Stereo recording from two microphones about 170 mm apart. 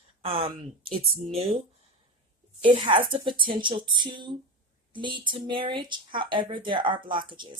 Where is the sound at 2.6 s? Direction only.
30° right (ahead or behind).